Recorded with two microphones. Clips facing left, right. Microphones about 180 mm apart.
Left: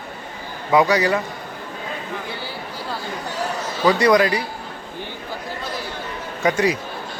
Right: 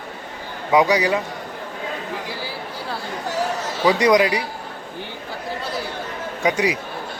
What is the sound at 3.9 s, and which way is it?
Speech, 15° right (ahead or behind).